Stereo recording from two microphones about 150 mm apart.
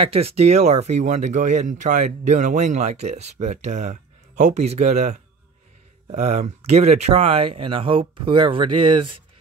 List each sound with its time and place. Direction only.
0.0 s speech: 40° right (ahead or behind)